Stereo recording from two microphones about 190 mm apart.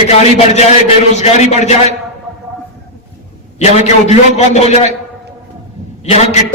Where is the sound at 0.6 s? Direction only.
35° left (ahead or behind).